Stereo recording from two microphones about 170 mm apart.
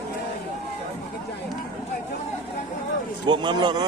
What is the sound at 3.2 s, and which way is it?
Speech, 25° right (ahead or behind).